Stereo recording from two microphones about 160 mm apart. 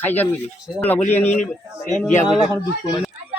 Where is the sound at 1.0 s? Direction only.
45° left (ahead or behind).